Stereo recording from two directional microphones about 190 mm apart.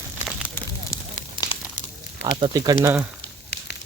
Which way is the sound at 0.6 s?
10° left (ahead or behind).